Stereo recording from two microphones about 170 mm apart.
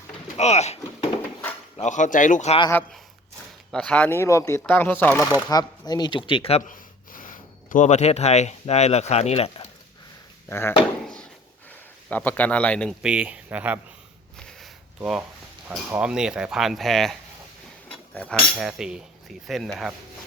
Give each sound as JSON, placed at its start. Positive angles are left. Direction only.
{"t": 0.3, "sound": "speech", "side_deg": 40}
{"t": 3.7, "sound": "speech", "side_deg": 5}
{"t": 5.3, "sound": "speech", "side_deg": 25}
{"t": 6.7, "sound": "speech", "side_deg": 50}
{"t": 10.5, "sound": "speech", "side_deg": 15}
{"t": 12.0, "sound": "speech", "side_deg": 10}
{"t": 13.0, "sound": "speech", "side_deg": -5}
{"t": 14.6, "sound": "a sound", "side_deg": -5}
{"t": 16.0, "sound": "speech", "side_deg": -5}
{"t": 18.5, "sound": "speech", "side_deg": -5}